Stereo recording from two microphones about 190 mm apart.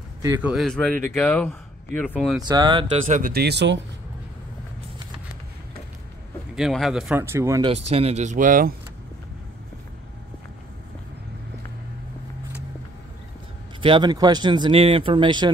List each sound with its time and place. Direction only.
0.2 s speech: 10° right (ahead or behind); by 2.4 s 5° left (ahead or behind)
2.4 s speech: 20° right (ahead or behind)
3.1 s speech: 45° right (ahead or behind); by 3.8 s 65° right (ahead or behind)
6.5 s speech: centre (ahead or behind)
7.6 s speech: 30° right (ahead or behind)
13.7 s speech: 25° right (ahead or behind)